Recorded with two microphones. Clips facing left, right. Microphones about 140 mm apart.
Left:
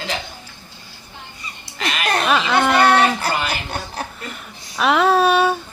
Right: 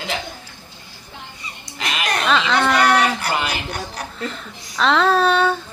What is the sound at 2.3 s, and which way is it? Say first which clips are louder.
Speech: even; 10° left (ahead or behind).